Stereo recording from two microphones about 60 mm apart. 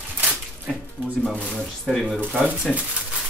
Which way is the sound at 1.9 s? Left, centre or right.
Centre.